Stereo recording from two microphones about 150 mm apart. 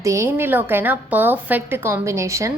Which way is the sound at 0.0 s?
20° right (ahead or behind).